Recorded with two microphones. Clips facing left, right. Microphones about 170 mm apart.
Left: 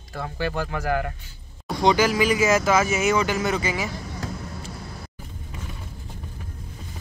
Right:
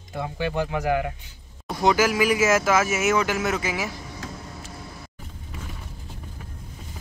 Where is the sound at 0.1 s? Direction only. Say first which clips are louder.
Right 1 dB; 15° right (ahead or behind).